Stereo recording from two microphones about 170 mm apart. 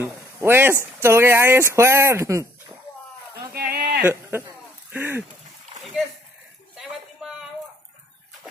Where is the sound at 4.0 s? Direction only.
15° right (ahead or behind).